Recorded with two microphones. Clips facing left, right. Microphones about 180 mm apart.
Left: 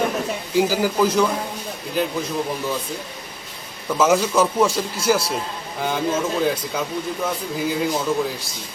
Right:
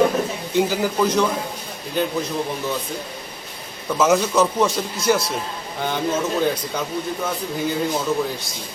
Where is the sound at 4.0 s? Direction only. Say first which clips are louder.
Even; 10° left (ahead or behind).